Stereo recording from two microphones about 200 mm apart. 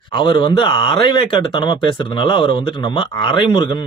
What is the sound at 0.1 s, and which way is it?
Speech, 25° left (ahead or behind).